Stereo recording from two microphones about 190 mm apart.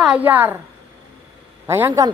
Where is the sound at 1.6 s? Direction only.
15° right (ahead or behind).